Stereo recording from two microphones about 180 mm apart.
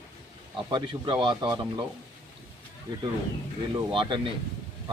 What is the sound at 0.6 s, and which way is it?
Speech, 25° right (ahead or behind).